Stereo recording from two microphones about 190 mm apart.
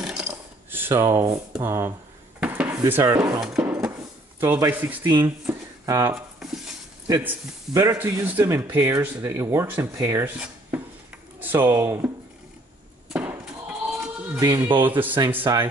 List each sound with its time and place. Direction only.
0.0 s mechanisms: 5° right (ahead or behind)
0.3 s a sound: 10° right (ahead or behind)
1.5 s speech: 10° right (ahead or behind)
2.4 s dishes: 10° right (ahead or behind)
3.3 s music: 5° right (ahead or behind)
3.9 s drawer open or close: 15° right (ahead or behind)
5.2 s a sound: 15° right (ahead or behind)
6.1 s a sound: 5° right (ahead or behind)
7.1 s speech: 15° right (ahead or behind)
13.1 s music: 10° right (ahead or behind)
14.4 s speech: 20° right (ahead or behind)